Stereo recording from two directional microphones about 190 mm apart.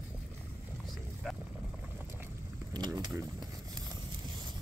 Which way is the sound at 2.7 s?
20° right (ahead or behind).